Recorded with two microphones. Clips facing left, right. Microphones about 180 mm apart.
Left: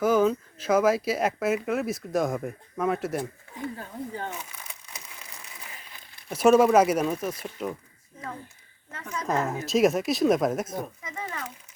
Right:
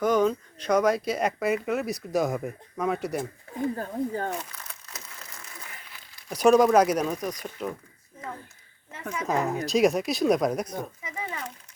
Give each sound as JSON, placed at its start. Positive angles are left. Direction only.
{"t": 0.0, "sound": "speech", "side_deg": 5}
{"t": 3.8, "sound": "speech", "side_deg": -45}
{"t": 4.5, "sound": "a sound", "side_deg": 10}
{"t": 6.3, "sound": "speech", "side_deg": 5}
{"t": 9.1, "sound": "speech", "side_deg": 0}
{"t": 11.0, "sound": "speech", "side_deg": -10}